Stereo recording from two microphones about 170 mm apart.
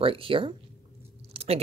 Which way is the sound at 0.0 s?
30° right (ahead or behind).